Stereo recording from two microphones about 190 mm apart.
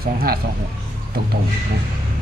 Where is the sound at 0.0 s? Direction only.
50° right (ahead or behind).